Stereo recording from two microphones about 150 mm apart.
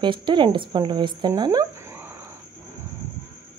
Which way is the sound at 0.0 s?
30° right (ahead or behind).